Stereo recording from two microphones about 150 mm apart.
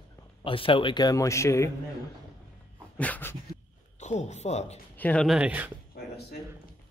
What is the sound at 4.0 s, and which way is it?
Speech, 50° left (ahead or behind).